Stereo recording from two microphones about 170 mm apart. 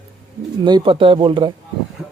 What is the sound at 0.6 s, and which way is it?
Speech, 25° right (ahead or behind).